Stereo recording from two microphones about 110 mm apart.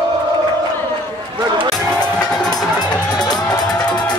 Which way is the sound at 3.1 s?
35° left (ahead or behind).